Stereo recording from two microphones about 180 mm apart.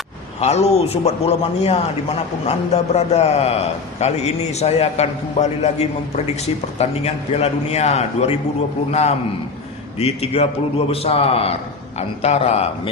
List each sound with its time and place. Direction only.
0.3 s a man's voice: 35° left (ahead or behind)